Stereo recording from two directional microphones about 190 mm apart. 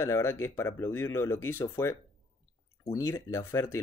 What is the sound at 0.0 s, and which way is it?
Speech, 15° left (ahead or behind).